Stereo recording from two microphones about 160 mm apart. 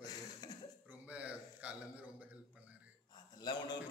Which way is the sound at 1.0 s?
10° right (ahead or behind).